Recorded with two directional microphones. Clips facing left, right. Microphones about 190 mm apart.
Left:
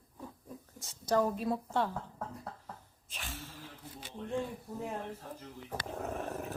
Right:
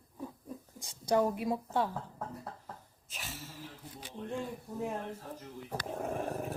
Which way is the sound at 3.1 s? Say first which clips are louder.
Even; 5° right (ahead or behind).